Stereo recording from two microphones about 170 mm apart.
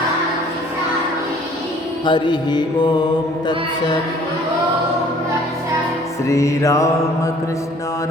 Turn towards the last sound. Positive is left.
turn(degrees=20)  # may be behind; listen again after turning